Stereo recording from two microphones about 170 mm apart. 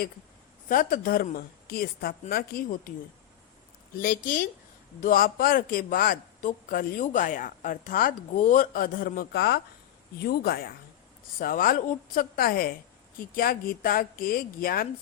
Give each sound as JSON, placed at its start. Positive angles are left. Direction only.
{"t": 0.7, "sound": "a man's voice", "side_deg": 60}
{"t": 3.9, "sound": "a woman's voice", "side_deg": 55}